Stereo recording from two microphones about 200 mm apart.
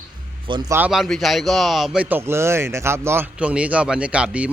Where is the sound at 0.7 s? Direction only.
5° right (ahead or behind).